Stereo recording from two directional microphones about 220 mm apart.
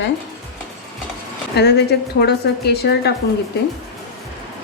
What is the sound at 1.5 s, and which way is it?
A woman's voice, 50° left (ahead or behind).